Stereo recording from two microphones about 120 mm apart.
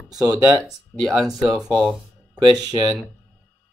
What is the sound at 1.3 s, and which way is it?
Speech, 35° right (ahead or behind).